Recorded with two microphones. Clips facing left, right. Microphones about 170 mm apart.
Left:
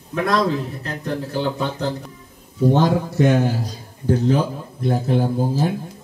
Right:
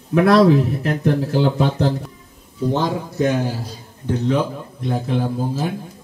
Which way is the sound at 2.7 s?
60° left (ahead or behind).